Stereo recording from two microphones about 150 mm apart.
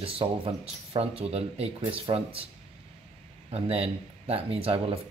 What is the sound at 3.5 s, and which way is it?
Speech, 40° right (ahead or behind).